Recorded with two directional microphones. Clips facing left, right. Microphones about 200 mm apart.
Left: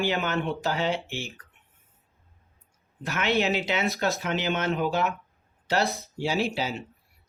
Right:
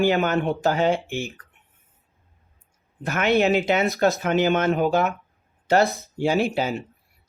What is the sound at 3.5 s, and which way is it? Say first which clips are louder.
Speech: right 6 dB; 50° right (ahead or behind).